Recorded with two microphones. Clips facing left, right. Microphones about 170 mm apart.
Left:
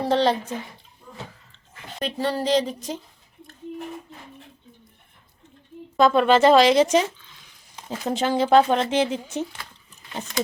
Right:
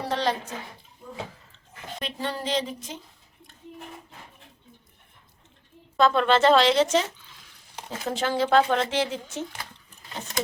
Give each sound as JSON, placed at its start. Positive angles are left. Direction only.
{"t": 0.1, "sound": "speech", "side_deg": 30}
{"t": 2.0, "sound": "speech", "side_deg": 35}
{"t": 6.0, "sound": "a woman's voice", "side_deg": 10}